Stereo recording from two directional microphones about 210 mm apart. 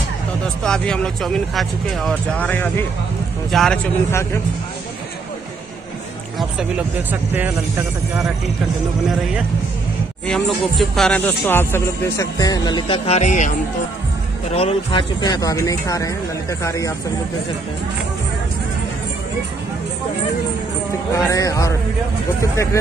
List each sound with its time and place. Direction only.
0.7 s speech: 5° left (ahead or behind)
4.1 s speech: 10° left (ahead or behind)
7.1 s speech: 10° right (ahead or behind)
10.2 s speech: centre (ahead or behind); by 13.5 s 35° left (ahead or behind)
14.5 s speech: 30° left (ahead or behind)
21.2 s speech: 15° left (ahead or behind)